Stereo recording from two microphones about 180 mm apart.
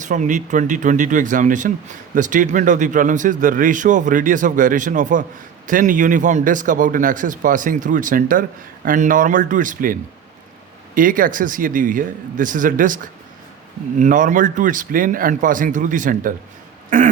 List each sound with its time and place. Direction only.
0.0 s a man's voice: 45° right (ahead or behind)
14.0 s a man's voice: 45° right (ahead or behind)